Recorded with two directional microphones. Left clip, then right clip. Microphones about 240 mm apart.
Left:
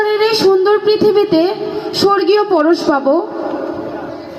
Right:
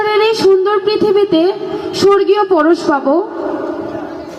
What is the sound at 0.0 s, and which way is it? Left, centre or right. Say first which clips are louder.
Music: right 1 dB; left.